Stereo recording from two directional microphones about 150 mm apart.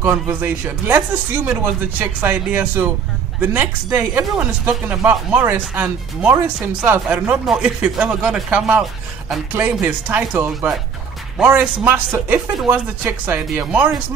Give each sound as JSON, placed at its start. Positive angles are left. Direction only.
{"t": 0.0, "sound": "speech", "side_deg": -10}